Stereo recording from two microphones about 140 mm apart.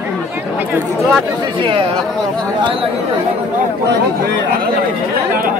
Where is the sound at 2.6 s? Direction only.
40° right (ahead or behind).